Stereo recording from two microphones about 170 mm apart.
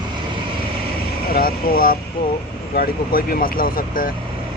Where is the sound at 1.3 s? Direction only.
60° left (ahead or behind).